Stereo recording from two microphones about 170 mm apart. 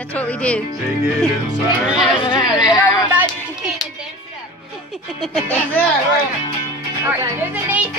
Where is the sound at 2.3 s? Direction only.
25° left (ahead or behind).